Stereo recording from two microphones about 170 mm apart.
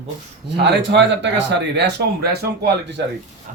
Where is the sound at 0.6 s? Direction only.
85° right; by 3.0 s 70° right (ahead or behind).